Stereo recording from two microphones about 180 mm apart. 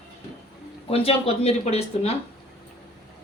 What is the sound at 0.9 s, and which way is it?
Speech, 35° left (ahead or behind).